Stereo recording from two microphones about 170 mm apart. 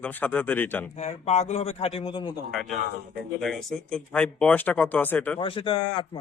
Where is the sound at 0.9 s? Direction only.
40° left (ahead or behind).